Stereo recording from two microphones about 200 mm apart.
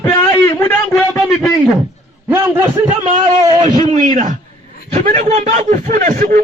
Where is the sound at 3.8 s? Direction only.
35° right (ahead or behind).